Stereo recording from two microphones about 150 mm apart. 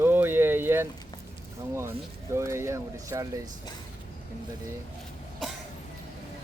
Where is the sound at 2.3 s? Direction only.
15° right (ahead or behind).